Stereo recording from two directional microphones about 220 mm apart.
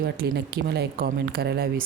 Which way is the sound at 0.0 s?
50° right (ahead or behind).